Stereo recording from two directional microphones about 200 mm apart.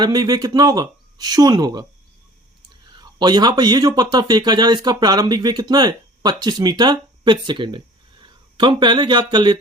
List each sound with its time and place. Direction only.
0.0 s speech: 20° right (ahead or behind)
2.9 s speech: 20° right (ahead or behind)